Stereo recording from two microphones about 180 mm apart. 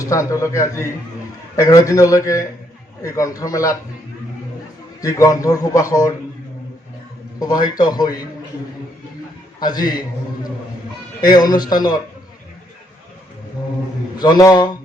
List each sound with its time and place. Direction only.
0.0 s a man's voice: 20° left (ahead or behind)
4.9 s a man's voice: 20° left (ahead or behind)
7.3 s a man's voice: 20° left (ahead or behind)
9.6 s a man's voice: 20° left (ahead or behind)
11.3 s a man's voice: 25° left (ahead or behind)
14.2 s a man's voice: 20° left (ahead or behind)